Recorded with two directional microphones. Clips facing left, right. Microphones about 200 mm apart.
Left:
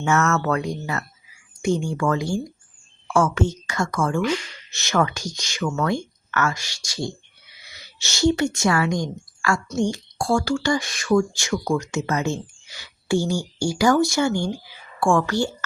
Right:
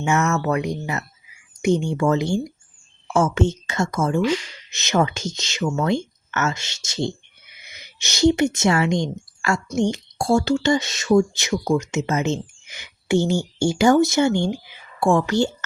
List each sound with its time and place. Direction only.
0.0 s speech: 15° right (ahead or behind)